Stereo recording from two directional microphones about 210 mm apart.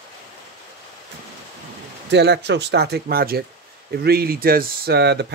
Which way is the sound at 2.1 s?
55° right (ahead or behind).